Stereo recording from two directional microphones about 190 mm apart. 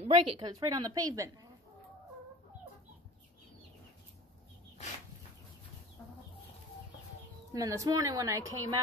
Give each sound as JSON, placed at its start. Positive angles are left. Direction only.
{"t": 0.0, "sound": "a woman's voice", "side_deg": -25}
{"t": 7.5, "sound": "a woman's voice", "side_deg": -20}